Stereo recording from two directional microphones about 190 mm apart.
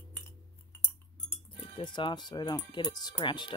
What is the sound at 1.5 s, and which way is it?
Speech, 25° left (ahead or behind).